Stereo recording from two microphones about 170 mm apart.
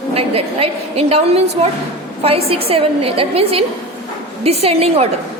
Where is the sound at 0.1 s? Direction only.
35° right (ahead or behind).